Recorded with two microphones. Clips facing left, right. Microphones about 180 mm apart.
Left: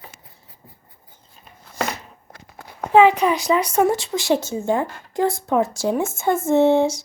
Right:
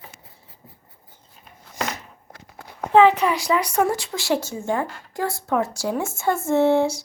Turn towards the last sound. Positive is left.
turn(degrees=20)  # may be behind; listen again after turning